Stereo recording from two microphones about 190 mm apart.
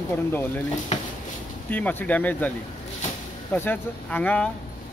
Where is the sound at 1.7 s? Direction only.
10° left (ahead or behind).